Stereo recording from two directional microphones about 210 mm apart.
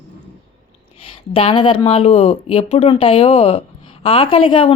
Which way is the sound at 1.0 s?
25° left (ahead or behind).